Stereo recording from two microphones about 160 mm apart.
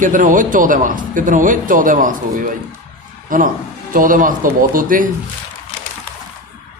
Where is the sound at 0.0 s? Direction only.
55° right (ahead or behind).